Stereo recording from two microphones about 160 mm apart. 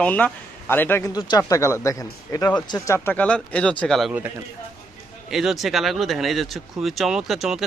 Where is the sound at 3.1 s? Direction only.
10° left (ahead or behind).